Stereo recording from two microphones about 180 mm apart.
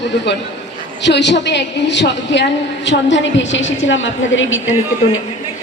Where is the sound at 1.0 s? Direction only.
75° left (ahead or behind); by 4.7 s 90° left.